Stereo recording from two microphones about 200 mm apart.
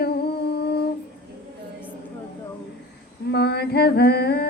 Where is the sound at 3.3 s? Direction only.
55° left (ahead or behind).